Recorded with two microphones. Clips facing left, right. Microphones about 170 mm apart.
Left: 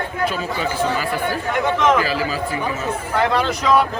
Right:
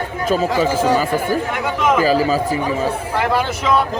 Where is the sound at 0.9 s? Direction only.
45° right (ahead or behind).